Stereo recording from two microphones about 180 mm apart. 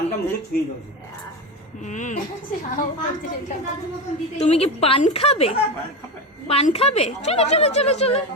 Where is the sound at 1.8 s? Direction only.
45° left (ahead or behind).